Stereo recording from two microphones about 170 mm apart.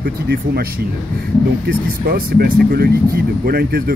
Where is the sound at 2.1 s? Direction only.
60° right (ahead or behind).